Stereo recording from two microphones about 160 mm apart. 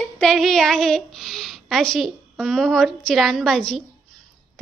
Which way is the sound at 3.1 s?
Centre (ahead or behind).